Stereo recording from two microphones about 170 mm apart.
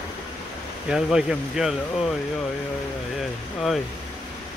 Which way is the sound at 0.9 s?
5° right (ahead or behind).